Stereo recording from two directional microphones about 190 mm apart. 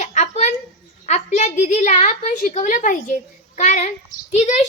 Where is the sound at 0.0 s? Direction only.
40° left (ahead or behind).